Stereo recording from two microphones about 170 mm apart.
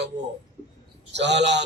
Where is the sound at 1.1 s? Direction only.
90° right.